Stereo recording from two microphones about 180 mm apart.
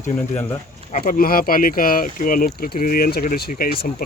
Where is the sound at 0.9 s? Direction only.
50° left (ahead or behind).